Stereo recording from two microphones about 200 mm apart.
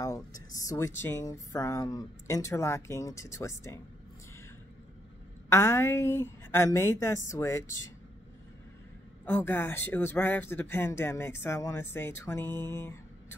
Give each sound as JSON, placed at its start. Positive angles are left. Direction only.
{"t": 0.0, "sound": "speech", "side_deg": 15}
{"t": 5.5, "sound": "speech", "side_deg": 10}
{"t": 9.2, "sound": "speech", "side_deg": 10}